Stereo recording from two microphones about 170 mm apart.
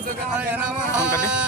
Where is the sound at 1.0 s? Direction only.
15° left (ahead or behind).